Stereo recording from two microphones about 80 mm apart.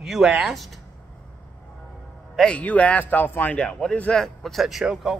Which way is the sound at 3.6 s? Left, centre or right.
Centre.